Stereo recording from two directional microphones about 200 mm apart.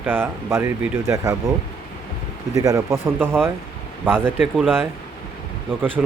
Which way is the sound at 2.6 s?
15° right (ahead or behind).